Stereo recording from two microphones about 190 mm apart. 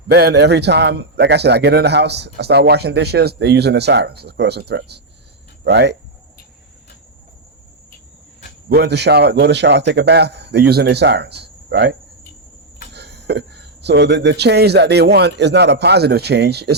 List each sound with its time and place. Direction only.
0.1 s a man's voice: 55° right (ahead or behind)
8.7 s a man's voice: 60° right (ahead or behind)